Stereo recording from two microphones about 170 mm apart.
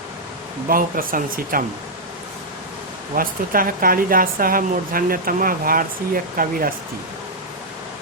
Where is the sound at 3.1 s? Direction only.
55° right (ahead or behind).